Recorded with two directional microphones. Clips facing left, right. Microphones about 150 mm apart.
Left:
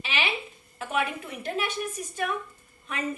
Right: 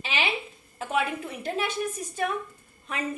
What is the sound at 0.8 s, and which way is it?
A woman's voice, 35° right (ahead or behind).